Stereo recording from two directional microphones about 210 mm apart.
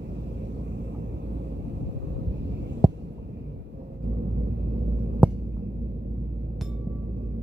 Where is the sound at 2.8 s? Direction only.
20° right (ahead or behind).